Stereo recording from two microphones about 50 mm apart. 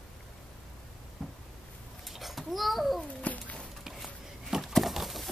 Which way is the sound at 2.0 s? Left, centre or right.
Centre.